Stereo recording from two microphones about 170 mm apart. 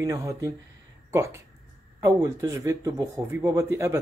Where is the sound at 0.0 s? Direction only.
20° right (ahead or behind).